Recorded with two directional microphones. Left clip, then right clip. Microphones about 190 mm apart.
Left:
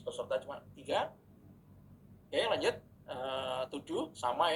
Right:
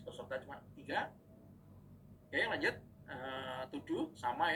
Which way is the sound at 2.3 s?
20° left (ahead or behind).